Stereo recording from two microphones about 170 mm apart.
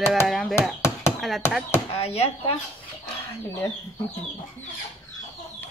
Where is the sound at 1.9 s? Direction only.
35° left (ahead or behind).